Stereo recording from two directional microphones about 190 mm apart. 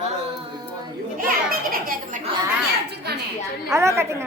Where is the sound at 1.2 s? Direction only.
50° right (ahead or behind).